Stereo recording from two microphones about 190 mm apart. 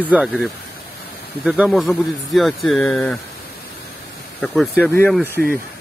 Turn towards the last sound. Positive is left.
turn(degrees=10)  # may be behind; listen again after turning